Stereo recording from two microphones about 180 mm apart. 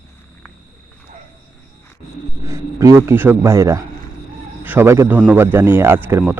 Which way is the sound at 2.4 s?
15° right (ahead or behind).